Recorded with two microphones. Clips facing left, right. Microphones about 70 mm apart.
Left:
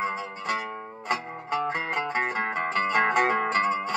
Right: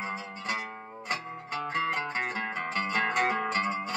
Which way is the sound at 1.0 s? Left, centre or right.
Left.